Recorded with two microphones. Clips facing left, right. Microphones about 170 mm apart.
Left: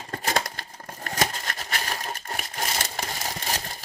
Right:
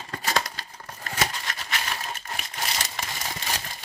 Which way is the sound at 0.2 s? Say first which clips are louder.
Even; 50° left (ahead or behind).